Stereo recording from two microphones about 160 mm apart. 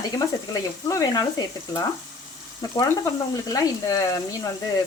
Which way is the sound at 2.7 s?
25° left (ahead or behind).